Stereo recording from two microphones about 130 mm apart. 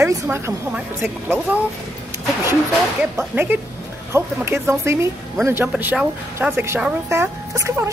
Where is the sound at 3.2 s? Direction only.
15° right (ahead or behind).